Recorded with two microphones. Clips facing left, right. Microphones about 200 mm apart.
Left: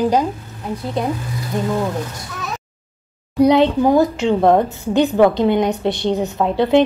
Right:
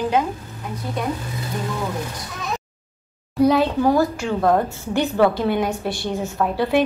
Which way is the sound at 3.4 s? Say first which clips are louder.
Left 4 dB; 20° left (ahead or behind).